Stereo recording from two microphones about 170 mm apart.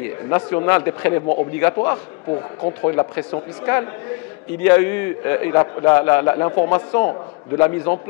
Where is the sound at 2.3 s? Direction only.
30° left (ahead or behind).